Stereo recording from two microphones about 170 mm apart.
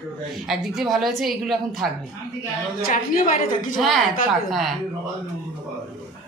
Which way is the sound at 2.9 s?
50° left (ahead or behind).